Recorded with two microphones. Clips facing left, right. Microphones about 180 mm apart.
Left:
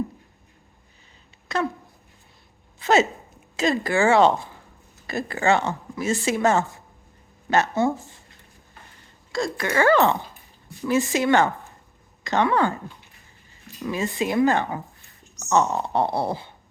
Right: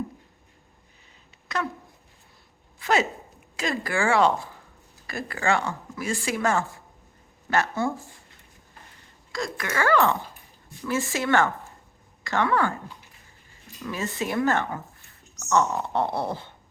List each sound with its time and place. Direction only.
1.5 s speech: 30° left (ahead or behind)
2.7 s a sound: 25° left (ahead or behind)
3.6 s a woman's voice: 25° left (ahead or behind)
9.3 s a woman's voice: 30° left (ahead or behind)
13.8 s speech: 15° left (ahead or behind)